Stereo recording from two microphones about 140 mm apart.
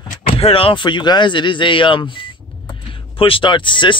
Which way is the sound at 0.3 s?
45° left (ahead or behind).